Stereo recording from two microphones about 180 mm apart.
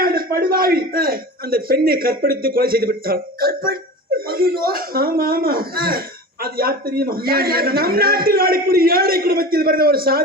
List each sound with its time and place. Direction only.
0.0 s a man's voice: 55° right (ahead or behind)